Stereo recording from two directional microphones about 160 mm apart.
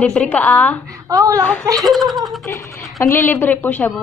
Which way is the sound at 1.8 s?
Centre (ahead or behind).